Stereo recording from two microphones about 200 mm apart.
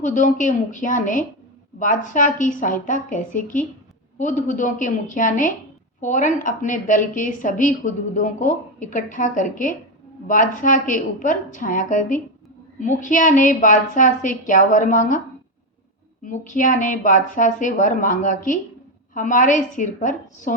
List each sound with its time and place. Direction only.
0.0 s a woman's voice: 40° left (ahead or behind)
16.2 s a woman's voice: 40° left (ahead or behind)